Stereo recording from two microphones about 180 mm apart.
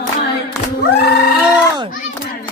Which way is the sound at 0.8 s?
65° left (ahead or behind).